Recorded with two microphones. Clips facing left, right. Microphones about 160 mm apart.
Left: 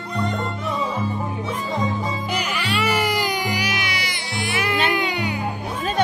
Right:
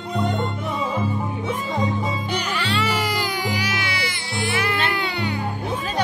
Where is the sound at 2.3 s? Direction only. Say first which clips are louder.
Even; 10° left (ahead or behind).